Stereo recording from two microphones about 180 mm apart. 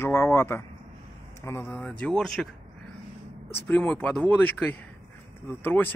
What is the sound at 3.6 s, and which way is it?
Speech, 5° left (ahead or behind).